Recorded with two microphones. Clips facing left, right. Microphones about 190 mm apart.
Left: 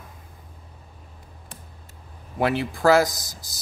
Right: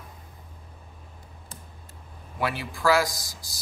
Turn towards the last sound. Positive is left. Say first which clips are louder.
# left 1 dB
turn(degrees=20)  # may be behind; listen again after turning